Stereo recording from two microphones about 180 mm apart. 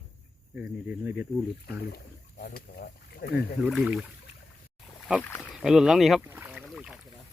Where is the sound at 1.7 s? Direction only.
60° left (ahead or behind).